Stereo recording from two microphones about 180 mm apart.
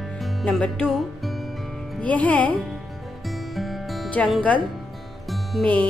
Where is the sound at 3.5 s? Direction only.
Centre (ahead or behind).